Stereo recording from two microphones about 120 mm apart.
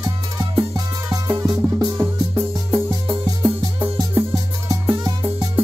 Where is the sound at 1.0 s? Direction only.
30° right (ahead or behind).